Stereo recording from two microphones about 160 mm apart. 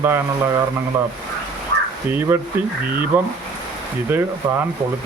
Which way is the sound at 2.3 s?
15° right (ahead or behind).